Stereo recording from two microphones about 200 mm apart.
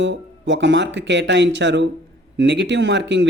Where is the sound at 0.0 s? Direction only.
65° right (ahead or behind).